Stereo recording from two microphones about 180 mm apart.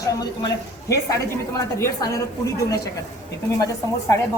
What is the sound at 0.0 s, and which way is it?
Speech, 20° left (ahead or behind).